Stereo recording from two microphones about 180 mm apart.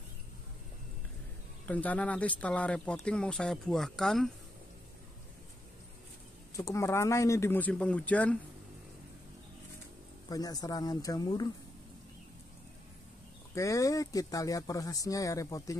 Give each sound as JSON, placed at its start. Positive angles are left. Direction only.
{"t": 1.7, "sound": "speech", "side_deg": 10}
{"t": 6.5, "sound": "speech", "side_deg": 15}
{"t": 10.3, "sound": "speech", "side_deg": 20}
{"t": 13.6, "sound": "speech", "side_deg": 20}